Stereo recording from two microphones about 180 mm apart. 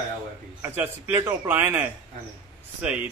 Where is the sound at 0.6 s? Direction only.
10° right (ahead or behind).